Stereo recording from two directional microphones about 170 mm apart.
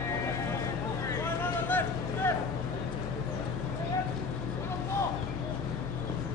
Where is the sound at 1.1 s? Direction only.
10° left (ahead or behind).